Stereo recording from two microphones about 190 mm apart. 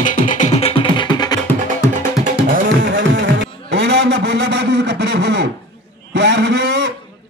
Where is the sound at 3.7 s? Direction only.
65° right (ahead or behind).